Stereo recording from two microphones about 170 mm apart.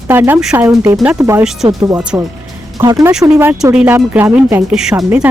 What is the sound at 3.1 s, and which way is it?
Speech, 5° right (ahead or behind).